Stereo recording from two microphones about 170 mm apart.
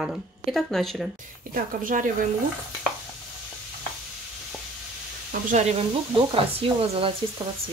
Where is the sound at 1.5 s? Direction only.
50° right (ahead or behind).